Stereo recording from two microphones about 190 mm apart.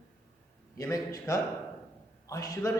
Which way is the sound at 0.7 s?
15° left (ahead or behind).